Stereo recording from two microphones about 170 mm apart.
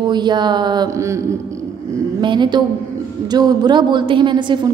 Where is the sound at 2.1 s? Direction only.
25° right (ahead or behind).